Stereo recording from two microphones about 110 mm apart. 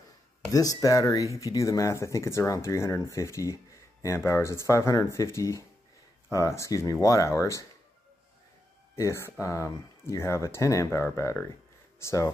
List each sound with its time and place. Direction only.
0.5 s speech: 35° left (ahead or behind)
8.9 s speech: 25° left (ahead or behind)